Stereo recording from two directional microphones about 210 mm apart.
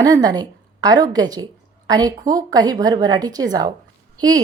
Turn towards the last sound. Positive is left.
turn(degrees=-20)  # may be behind; listen again after turning